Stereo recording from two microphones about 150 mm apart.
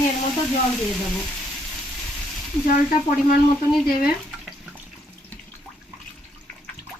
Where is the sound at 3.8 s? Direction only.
90° left.